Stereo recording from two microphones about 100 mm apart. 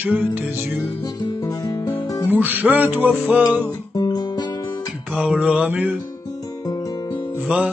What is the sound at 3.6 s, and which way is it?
Guitar, 40° left (ahead or behind).